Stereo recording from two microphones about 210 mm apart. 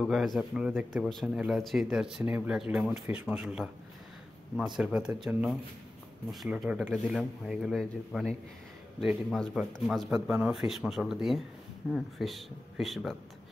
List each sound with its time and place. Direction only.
0.0 s speech: centre (ahead or behind)